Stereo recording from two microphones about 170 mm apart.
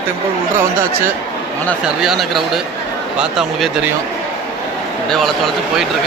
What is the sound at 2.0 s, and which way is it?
Speech, centre (ahead or behind).